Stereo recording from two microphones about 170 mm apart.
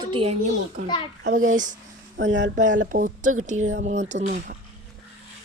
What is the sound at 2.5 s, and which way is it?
Speech, 50° right (ahead or behind).